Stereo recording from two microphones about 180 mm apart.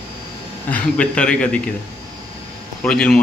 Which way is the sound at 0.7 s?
10° left (ahead or behind).